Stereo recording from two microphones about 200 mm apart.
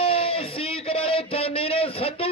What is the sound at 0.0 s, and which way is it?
A man's voice, 30° left (ahead or behind).